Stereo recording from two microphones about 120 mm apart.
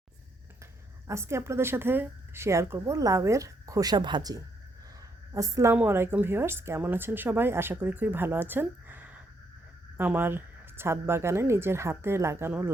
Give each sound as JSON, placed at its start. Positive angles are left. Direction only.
{"t": 0.6, "sound": "a woman's voice", "side_deg": -25}